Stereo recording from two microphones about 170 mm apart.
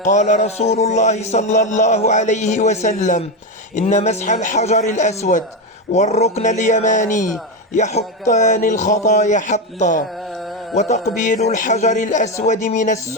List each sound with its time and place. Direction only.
0.0 s speech: 45° left (ahead or behind)